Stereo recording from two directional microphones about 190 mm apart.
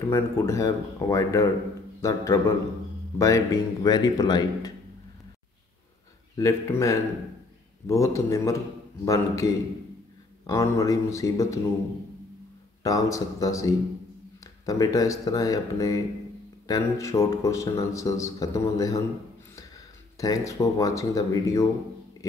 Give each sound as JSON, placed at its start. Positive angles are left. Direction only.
{"t": 0.1, "sound": "a man's voice", "side_deg": 15}
{"t": 6.3, "sound": "a man's voice", "side_deg": 15}
{"t": 12.8, "sound": "a man's voice", "side_deg": 20}
{"t": 20.2, "sound": "a man's voice", "side_deg": 15}
{"t": 22.2, "sound": "a sound", "side_deg": 15}